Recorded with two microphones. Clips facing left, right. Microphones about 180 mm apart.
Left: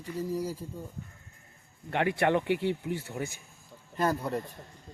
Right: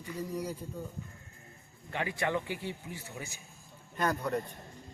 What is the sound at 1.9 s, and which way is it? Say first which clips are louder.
Speech: left 7 dB; 65° left (ahead or behind).